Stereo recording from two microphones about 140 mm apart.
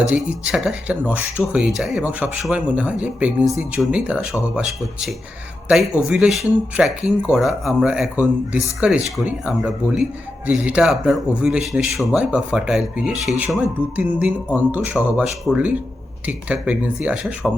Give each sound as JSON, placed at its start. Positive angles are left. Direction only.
{"t": 0.1, "sound": "a man's voice", "side_deg": -10}